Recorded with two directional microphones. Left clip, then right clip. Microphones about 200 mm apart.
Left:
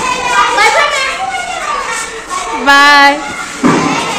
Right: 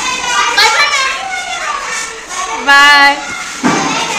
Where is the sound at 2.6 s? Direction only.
10° left (ahead or behind).